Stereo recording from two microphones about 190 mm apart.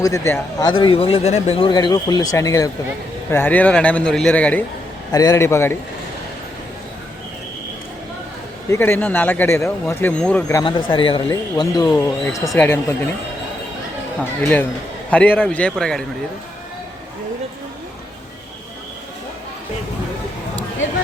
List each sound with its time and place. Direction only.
0.0 s a man's voice: 15° left (ahead or behind)
0.7 s a man's voice: 25° left (ahead or behind); by 4.6 s 5° left (ahead or behind)
5.1 s a man's voice: 20° left (ahead or behind)
8.7 s a man's voice: 10° left (ahead or behind)
10.5 s a man's voice: 25° left (ahead or behind)
14.4 s a man's voice: 10° left (ahead or behind)